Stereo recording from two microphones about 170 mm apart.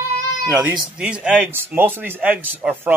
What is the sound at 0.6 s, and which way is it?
Speech, 5° right (ahead or behind).